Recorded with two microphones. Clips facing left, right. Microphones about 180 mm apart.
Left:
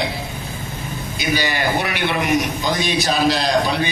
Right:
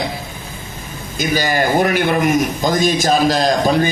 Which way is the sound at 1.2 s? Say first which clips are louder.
Right 5 dB; 45° right (ahead or behind).